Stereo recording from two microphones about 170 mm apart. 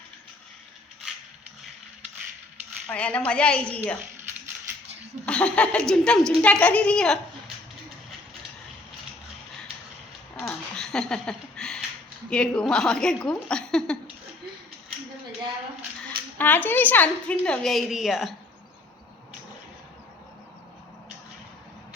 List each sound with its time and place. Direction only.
2.9 s a woman's voice: 5° left (ahead or behind)
5.2 s a woman's voice: 5° left (ahead or behind)
10.8 s a sound: 5° left (ahead or behind)
12.3 s a woman's voice: 5° left (ahead or behind)
16.4 s a woman's voice: 10° left (ahead or behind)